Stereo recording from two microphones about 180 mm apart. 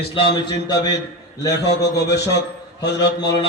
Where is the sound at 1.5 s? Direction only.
70° left (ahead or behind).